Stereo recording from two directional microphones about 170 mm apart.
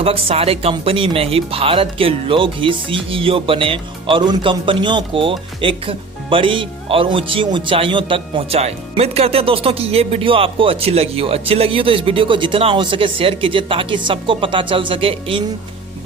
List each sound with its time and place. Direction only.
0.0 s speech: 35° right (ahead or behind)